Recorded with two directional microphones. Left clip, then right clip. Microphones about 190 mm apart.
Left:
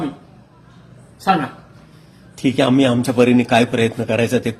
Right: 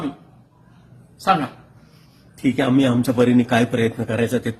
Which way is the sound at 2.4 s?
5° right (ahead or behind).